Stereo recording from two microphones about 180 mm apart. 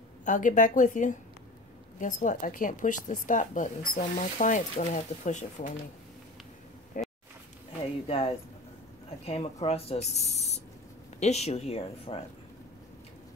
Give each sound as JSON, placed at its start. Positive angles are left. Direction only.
{"t": 0.2, "sound": "speech", "side_deg": 45}
{"t": 7.0, "sound": "a sound", "side_deg": 45}
{"t": 8.1, "sound": "speech", "side_deg": 30}